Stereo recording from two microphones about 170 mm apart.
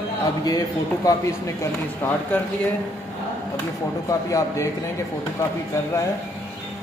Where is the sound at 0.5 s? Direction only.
20° left (ahead or behind).